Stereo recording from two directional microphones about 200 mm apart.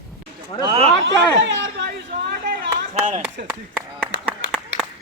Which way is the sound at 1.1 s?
65° right (ahead or behind).